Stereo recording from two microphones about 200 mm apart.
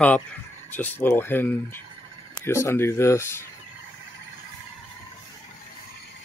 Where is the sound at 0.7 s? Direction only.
10° left (ahead or behind).